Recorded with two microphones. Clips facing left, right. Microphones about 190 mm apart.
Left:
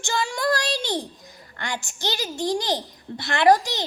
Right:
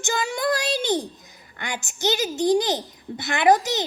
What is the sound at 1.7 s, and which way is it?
A child's voice, 20° right (ahead or behind).